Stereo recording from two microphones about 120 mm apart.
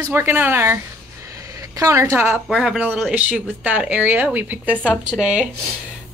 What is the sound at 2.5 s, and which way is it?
Speech, 5° right (ahead or behind).